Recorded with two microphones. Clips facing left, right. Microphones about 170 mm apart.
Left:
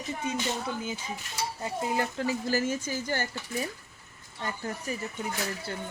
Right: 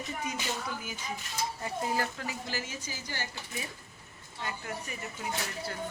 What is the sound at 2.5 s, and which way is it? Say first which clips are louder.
Speech: left 10 dB; 45° left (ahead or behind).